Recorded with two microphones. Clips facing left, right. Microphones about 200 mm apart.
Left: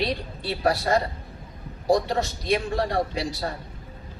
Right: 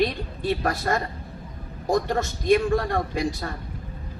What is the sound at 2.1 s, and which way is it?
A woman's voice, 50° right (ahead or behind).